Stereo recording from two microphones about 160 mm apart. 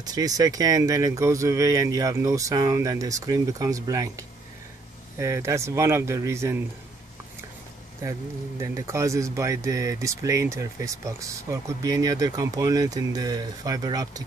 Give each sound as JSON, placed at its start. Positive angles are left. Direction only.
{"t": 0.0, "sound": "speech", "side_deg": -25}
{"t": 8.0, "sound": "speech", "side_deg": -20}